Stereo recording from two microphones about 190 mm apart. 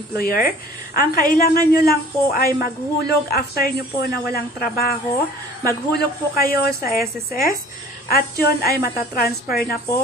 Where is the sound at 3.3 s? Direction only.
55° left (ahead or behind).